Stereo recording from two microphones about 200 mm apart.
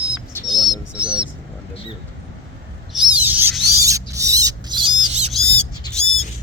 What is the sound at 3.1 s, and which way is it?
Rodents, 10° right (ahead or behind).